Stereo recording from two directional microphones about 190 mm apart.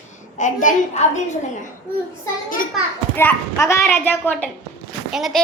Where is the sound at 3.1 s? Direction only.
15° left (ahead or behind).